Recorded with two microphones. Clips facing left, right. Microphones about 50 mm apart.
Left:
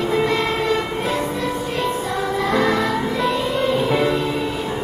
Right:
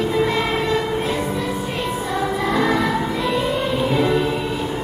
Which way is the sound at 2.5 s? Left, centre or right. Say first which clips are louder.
Left 1 dB; centre.